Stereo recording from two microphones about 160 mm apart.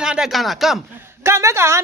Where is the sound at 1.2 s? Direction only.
15° right (ahead or behind).